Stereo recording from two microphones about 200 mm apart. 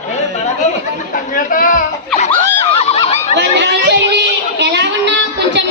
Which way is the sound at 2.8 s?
30° left (ahead or behind).